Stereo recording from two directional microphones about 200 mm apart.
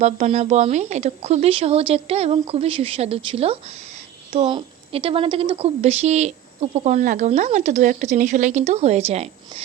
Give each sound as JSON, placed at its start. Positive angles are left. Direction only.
{"t": 0.0, "sound": "a woman's voice", "side_deg": -35}